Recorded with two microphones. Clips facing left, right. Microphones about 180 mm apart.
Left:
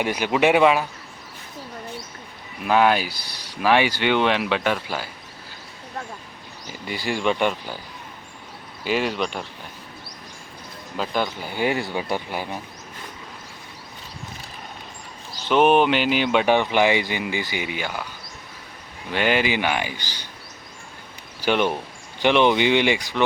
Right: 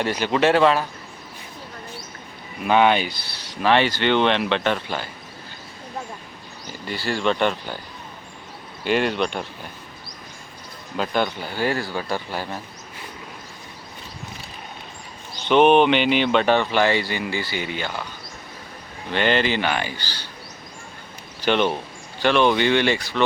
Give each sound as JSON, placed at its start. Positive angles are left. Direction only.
{"t": 0.0, "sound": "speech", "side_deg": 10}
{"t": 2.6, "sound": "speech", "side_deg": 5}
{"t": 6.8, "sound": "speech", "side_deg": 15}
{"t": 8.8, "sound": "speech", "side_deg": 5}
{"t": 10.9, "sound": "speech", "side_deg": 0}
{"t": 11.5, "sound": "speech", "side_deg": 20}
{"t": 15.4, "sound": "speech", "side_deg": 5}
{"t": 19.1, "sound": "speech", "side_deg": 10}
{"t": 21.4, "sound": "speech", "side_deg": 10}